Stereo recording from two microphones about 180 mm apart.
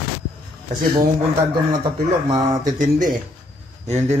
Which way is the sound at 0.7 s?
55° right (ahead or behind).